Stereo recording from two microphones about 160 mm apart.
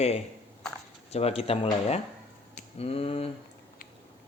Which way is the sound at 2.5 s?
40° left (ahead or behind).